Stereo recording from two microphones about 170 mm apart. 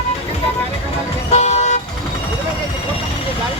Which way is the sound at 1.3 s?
40° left (ahead or behind).